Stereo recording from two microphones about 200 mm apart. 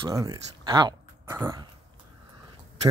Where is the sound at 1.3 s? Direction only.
15° right (ahead or behind).